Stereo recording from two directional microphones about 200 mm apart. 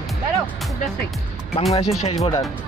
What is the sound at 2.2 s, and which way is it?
Speech, 15° left (ahead or behind).